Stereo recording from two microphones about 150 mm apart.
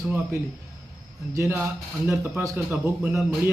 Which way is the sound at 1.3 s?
15° right (ahead or behind).